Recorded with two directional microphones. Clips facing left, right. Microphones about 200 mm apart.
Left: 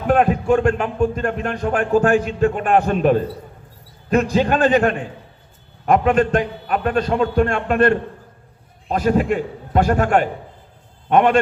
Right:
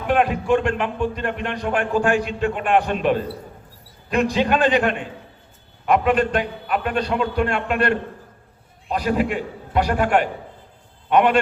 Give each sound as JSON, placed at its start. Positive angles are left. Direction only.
{"t": 0.1, "sound": "a man's voice", "side_deg": 40}